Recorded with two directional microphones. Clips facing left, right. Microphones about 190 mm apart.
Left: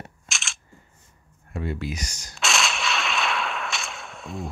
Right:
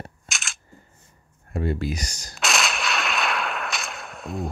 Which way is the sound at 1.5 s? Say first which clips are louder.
Right 4 dB; 40° right (ahead or behind).